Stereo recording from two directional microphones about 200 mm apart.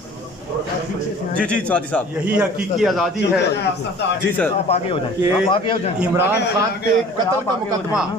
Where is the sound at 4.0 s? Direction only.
60° left (ahead or behind).